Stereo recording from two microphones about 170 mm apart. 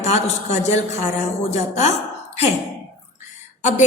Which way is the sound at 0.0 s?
40° left (ahead or behind).